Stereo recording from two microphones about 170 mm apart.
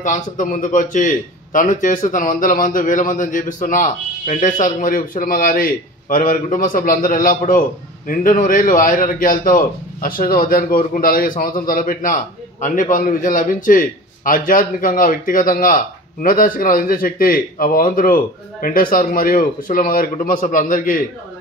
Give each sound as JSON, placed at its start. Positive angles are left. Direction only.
{"t": 0.0, "sound": "a man's voice", "side_deg": 50}